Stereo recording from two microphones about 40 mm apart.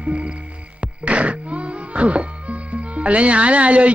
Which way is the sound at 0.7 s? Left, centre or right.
Right.